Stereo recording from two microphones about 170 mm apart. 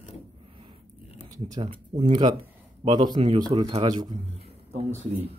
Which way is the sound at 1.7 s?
30° right (ahead or behind).